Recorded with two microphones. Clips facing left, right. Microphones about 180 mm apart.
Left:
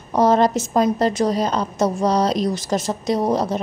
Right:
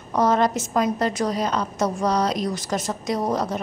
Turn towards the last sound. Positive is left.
turn(degrees=30)  # may be behind; listen again after turning